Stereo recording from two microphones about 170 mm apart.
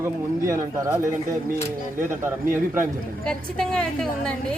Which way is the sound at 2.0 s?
15° right (ahead or behind).